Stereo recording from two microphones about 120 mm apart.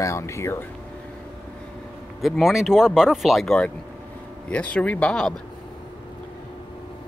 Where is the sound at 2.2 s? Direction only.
Centre (ahead or behind).